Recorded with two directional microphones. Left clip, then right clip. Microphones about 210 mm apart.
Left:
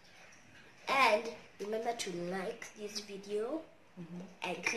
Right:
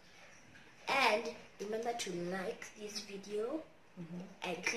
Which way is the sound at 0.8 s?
15° left (ahead or behind).